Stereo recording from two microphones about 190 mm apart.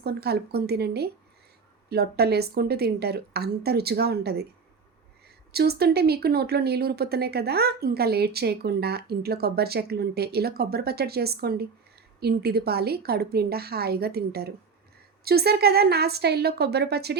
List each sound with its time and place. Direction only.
0.0 s speech: 55° right (ahead or behind)
5.5 s speech: 55° right (ahead or behind)